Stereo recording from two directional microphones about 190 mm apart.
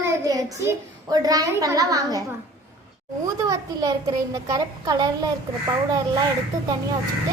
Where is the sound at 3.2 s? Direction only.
20° right (ahead or behind).